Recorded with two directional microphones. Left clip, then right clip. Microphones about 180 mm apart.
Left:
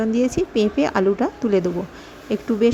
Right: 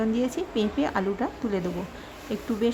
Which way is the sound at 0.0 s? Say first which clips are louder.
Left 7 dB; 20° left (ahead or behind).